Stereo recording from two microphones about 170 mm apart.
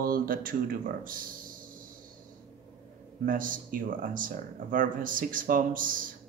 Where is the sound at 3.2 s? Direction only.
55° right (ahead or behind).